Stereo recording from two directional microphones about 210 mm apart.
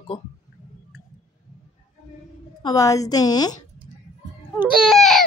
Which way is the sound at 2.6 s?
15° left (ahead or behind).